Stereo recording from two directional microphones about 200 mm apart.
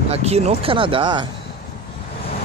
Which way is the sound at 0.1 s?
30° right (ahead or behind).